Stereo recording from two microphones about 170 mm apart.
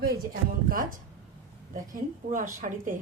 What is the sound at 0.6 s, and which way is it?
A woman's voice, 55° right (ahead or behind).